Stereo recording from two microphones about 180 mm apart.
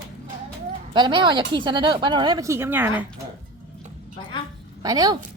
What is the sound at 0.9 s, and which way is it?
Speech, 25° right (ahead or behind).